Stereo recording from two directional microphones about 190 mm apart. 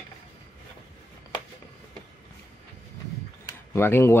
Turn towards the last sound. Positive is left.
turn(degrees=15)  # may be behind; listen again after turning